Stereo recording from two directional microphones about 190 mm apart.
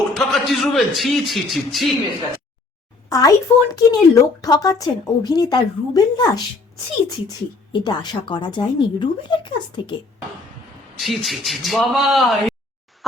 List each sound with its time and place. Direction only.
0.1 s a man's voice: centre (ahead or behind)
3.1 s a woman's voice: 20° left (ahead or behind)
7.7 s a woman's voice: 25° left (ahead or behind)
11.0 s a man's voice: centre (ahead or behind)